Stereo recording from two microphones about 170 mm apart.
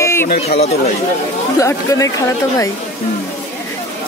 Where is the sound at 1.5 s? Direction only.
20° left (ahead or behind).